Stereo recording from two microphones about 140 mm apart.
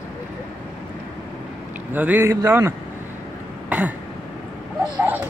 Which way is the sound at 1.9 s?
10° right (ahead or behind).